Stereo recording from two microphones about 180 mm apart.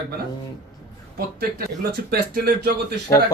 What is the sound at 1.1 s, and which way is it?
Speech, 60° right (ahead or behind).